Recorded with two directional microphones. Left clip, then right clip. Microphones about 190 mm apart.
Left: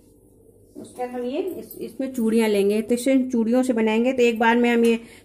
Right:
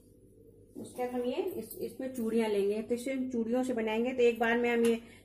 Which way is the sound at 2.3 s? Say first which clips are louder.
Left 10 dB; 50° left (ahead or behind).